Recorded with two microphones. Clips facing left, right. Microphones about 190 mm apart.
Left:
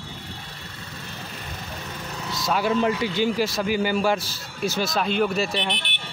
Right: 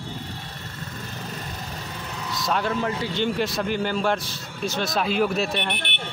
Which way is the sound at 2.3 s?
5° left (ahead or behind).